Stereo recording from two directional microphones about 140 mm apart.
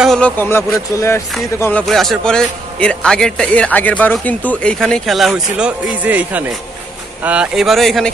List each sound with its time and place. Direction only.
0.0 s vehicle: 5° left (ahead or behind)
0.4 s a man's voice: 15° left (ahead or behind)
1.9 s a man's voice: centre (ahead or behind)